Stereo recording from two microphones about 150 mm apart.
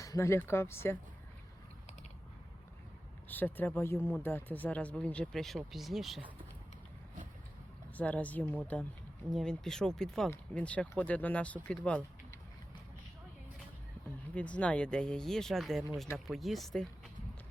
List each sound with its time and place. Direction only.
0.0 s speech: 20° left (ahead or behind)
3.2 s speech: 10° left (ahead or behind)
7.9 s speech: 10° left (ahead or behind)
14.3 s speech: 10° left (ahead or behind)